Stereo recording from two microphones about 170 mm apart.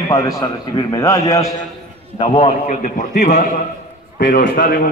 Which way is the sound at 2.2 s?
35° left (ahead or behind).